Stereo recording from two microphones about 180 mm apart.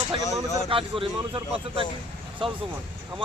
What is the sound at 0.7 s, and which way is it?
Speech, 30° right (ahead or behind).